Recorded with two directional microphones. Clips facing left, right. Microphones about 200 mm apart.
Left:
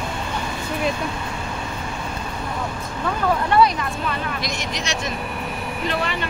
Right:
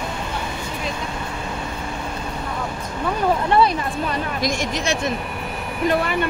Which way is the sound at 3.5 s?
30° right (ahead or behind).